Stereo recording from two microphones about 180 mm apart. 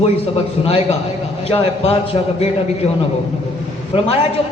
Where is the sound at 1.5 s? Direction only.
35° left (ahead or behind).